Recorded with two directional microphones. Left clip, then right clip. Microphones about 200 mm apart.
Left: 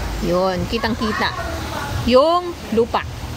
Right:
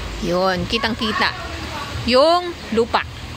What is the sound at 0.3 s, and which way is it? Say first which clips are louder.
Speech: even; 10° right (ahead or behind).